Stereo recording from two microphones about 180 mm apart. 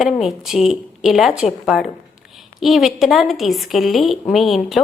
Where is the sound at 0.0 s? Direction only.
Centre (ahead or behind).